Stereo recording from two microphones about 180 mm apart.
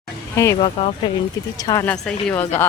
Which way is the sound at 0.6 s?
35° left (ahead or behind).